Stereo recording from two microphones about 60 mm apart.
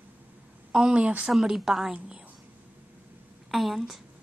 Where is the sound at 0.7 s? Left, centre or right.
Centre.